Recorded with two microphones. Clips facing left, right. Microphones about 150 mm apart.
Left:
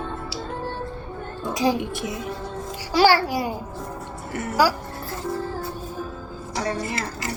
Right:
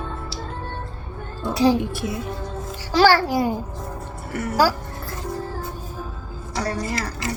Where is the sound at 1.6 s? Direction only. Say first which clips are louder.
Right 4 dB; 10° left (ahead or behind).